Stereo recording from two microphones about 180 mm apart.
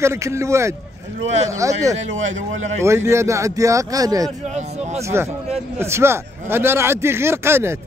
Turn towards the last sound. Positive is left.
turn(degrees=-15)  # may be behind; listen again after turning